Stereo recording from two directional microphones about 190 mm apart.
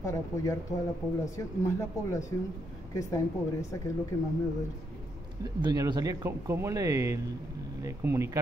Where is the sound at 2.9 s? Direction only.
15° left (ahead or behind).